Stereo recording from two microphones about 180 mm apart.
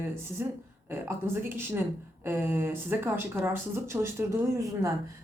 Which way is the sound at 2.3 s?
10° right (ahead or behind).